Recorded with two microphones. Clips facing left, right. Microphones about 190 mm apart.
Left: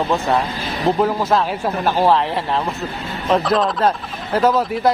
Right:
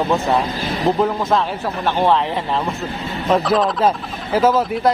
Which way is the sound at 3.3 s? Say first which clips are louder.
Even; centre (ahead or behind).